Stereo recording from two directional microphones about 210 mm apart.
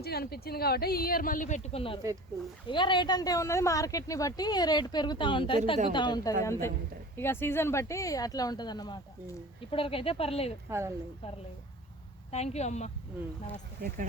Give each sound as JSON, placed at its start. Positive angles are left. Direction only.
{"t": 0.0, "sound": "speech", "side_deg": 50}
{"t": 10.7, "sound": "speech", "side_deg": -15}
{"t": 12.3, "sound": "a woman's voice", "side_deg": 30}
{"t": 13.8, "sound": "speech", "side_deg": -40}